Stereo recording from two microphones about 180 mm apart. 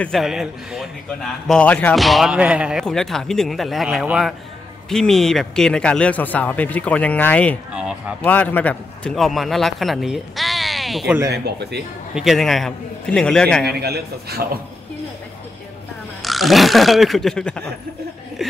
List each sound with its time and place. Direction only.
0.0 s a man's voice: centre (ahead or behind)
11.2 s speech: 65° right (ahead or behind)
12.2 s a man's voice: centre (ahead or behind)
13.7 s a man's voice: 65° right (ahead or behind)
16.3 s a man's voice: centre (ahead or behind)
18.4 s a sound: centre (ahead or behind)